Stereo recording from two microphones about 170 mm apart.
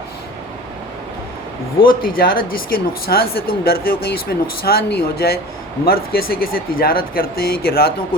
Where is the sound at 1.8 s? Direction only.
60° left (ahead or behind).